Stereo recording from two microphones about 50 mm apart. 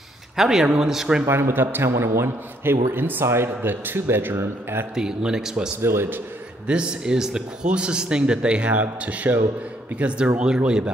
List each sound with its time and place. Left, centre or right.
0.4 s speech: centre
1.2 s speech: right
1.5 s a man's voice: right
4.9 s speech: centre
5.8 s a man's voice: right
6.7 s a man's voice: centre